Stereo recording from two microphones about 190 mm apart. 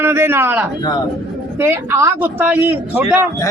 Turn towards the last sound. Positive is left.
turn(degrees=-10)  # may be behind; listen again after turning